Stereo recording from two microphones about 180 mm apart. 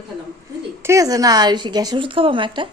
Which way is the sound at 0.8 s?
20° right (ahead or behind).